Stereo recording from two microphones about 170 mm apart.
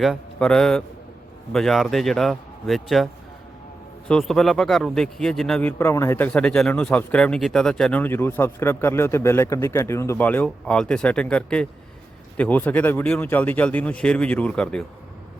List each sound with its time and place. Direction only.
0.0 s a man's voice: centre (ahead or behind)
4.1 s a man's voice: centre (ahead or behind)